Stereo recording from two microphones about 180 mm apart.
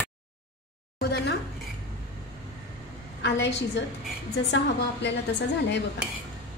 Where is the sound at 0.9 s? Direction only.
65° left (ahead or behind).